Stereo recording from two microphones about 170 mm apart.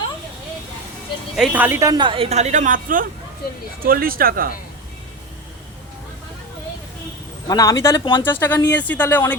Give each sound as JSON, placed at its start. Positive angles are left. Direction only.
{"t": 1.4, "sound": "speech", "side_deg": -10}
{"t": 1.9, "sound": "a woman's voice", "side_deg": -30}
{"t": 7.4, "sound": "speech", "side_deg": 20}
{"t": 8.2, "sound": "speech", "side_deg": 10}